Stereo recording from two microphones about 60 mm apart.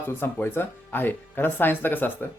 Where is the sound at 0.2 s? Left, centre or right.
Left.